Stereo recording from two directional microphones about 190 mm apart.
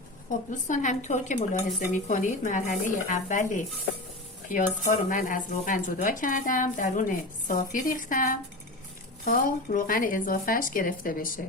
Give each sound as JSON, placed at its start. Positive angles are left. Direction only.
{"t": 0.3, "sound": "speech", "side_deg": 40}